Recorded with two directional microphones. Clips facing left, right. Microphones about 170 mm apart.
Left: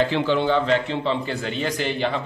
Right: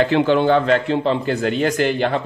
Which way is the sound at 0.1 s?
50° right (ahead or behind).